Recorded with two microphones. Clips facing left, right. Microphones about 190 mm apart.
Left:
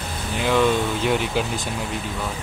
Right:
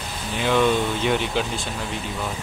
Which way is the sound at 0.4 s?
5° left (ahead or behind).